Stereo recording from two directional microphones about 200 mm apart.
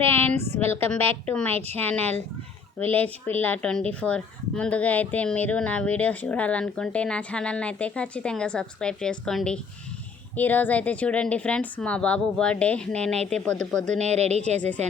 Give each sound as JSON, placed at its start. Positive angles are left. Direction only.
{"t": 0.1, "sound": "a sound", "side_deg": 10}
{"t": 1.3, "sound": "speech", "side_deg": 5}
{"t": 14.0, "sound": "speech", "side_deg": -35}